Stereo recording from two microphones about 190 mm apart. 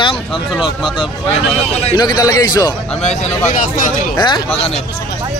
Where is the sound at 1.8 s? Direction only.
25° left (ahead or behind).